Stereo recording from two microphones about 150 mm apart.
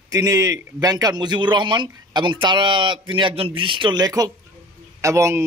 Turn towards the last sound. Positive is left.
turn(degrees=-20)  # may be behind; listen again after turning